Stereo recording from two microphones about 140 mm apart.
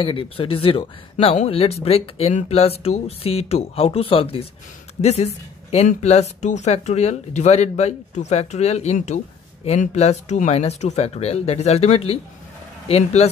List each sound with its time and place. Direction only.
0.0 s speech: 40° left (ahead or behind)
1.1 s speech: 55° left (ahead or behind)